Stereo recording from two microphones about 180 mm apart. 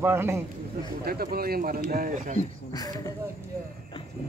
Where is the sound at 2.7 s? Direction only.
20° left (ahead or behind).